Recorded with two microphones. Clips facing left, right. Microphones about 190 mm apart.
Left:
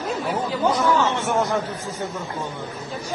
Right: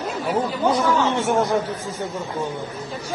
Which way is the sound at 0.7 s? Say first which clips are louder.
Right 1 dB; 10° right (ahead or behind).